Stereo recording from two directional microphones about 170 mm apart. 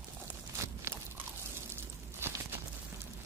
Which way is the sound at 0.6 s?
15° right (ahead or behind).